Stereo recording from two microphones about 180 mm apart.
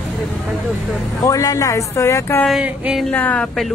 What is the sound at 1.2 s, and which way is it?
Speech, 20° left (ahead or behind).